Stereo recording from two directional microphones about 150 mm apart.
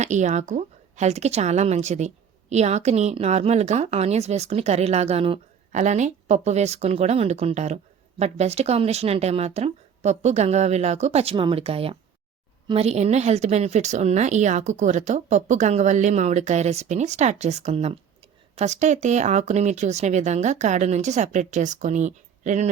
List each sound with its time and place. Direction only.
0.0 s a woman's voice: 50° right (ahead or behind)
5.7 s a woman's voice: 50° right (ahead or behind)